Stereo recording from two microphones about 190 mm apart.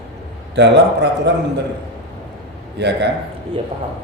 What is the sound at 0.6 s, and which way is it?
Speech, 65° right (ahead or behind).